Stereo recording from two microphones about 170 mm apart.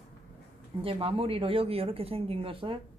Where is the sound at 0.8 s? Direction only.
30° right (ahead or behind).